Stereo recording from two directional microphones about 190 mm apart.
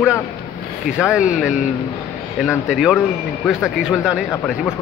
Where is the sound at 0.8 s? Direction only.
5° right (ahead or behind).